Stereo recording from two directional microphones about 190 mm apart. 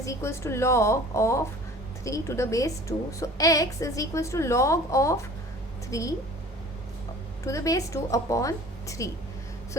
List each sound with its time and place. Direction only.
0.0 s a woman's voice: 15° left (ahead or behind)
7.4 s a woman's voice: 15° left (ahead or behind)